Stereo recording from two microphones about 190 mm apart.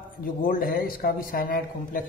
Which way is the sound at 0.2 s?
50° left (ahead or behind).